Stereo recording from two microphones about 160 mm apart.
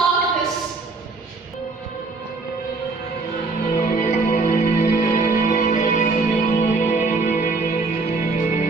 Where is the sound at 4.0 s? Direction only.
45° left (ahead or behind).